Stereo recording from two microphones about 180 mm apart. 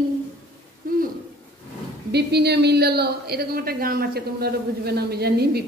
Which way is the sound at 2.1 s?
65° right (ahead or behind).